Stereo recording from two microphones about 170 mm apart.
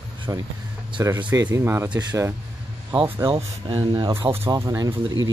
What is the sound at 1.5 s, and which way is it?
Speech, 15° right (ahead or behind).